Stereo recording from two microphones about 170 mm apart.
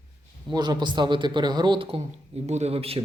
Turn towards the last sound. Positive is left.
turn(degrees=-35)  # may be behind; listen again after turning